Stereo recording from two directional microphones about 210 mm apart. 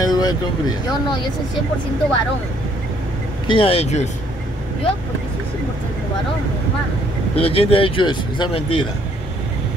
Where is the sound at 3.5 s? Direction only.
25° left (ahead or behind).